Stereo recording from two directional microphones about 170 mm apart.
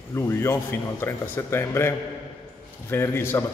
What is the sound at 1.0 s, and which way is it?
A man's voice, 15° left (ahead or behind).